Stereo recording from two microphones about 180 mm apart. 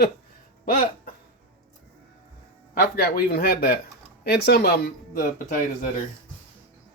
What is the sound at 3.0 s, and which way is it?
Speech, 55° left (ahead or behind).